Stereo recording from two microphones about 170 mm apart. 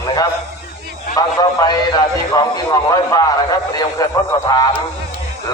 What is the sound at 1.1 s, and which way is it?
A man's voice, 25° left (ahead or behind).